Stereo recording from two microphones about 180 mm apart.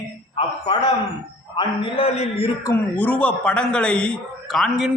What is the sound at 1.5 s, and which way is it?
Speech, 30° left (ahead or behind).